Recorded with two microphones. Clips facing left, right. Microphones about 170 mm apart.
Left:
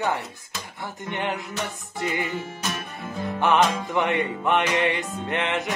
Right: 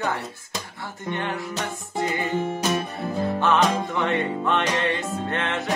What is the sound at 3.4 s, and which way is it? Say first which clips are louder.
Music: left 1 dB; 15° left (ahead or behind).